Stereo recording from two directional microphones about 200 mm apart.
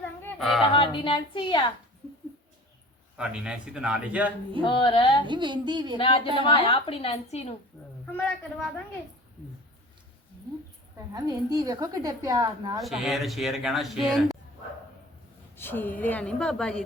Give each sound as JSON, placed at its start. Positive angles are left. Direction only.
{"t": 0.0, "sound": "a sound", "side_deg": 10}
{"t": 0.7, "sound": "a woman's voice", "side_deg": 25}
{"t": 3.2, "sound": "speech", "side_deg": -5}
{"t": 4.6, "sound": "a woman's voice", "side_deg": 25}
{"t": 5.2, "sound": "a sound", "side_deg": -25}
{"t": 6.0, "sound": "a woman's voice", "side_deg": 25}
{"t": 10.9, "sound": "a woman's voice", "side_deg": -20}
{"t": 12.8, "sound": "speech", "side_deg": 0}
{"t": 15.5, "sound": "a woman's voice", "side_deg": 10}